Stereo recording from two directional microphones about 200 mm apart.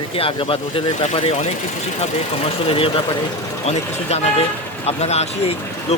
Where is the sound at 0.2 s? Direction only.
25° left (ahead or behind).